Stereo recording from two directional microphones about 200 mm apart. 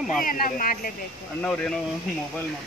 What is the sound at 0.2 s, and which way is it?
Speech, 45° left (ahead or behind).